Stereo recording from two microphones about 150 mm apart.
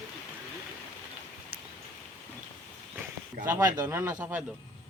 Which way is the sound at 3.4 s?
15° right (ahead or behind).